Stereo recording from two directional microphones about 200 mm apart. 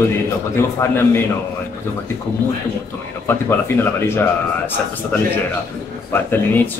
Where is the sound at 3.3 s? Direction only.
10° left (ahead or behind).